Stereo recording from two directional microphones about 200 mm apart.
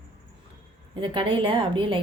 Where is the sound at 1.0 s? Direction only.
25° right (ahead or behind).